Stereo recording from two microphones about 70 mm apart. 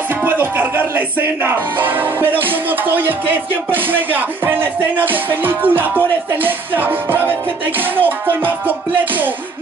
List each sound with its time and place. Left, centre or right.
0.2 s music: right